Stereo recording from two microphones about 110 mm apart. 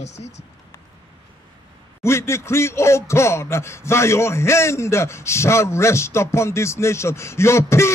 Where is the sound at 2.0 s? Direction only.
25° left (ahead or behind).